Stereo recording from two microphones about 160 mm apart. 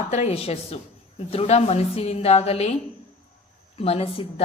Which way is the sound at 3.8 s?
40° left (ahead or behind).